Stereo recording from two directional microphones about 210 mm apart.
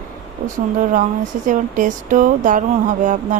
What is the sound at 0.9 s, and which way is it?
Speech, 40° right (ahead or behind).